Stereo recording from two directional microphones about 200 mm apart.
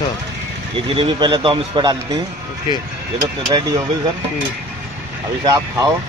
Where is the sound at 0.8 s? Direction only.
25° right (ahead or behind).